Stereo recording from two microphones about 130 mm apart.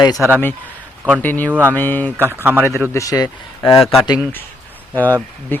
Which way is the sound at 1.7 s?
15° left (ahead or behind).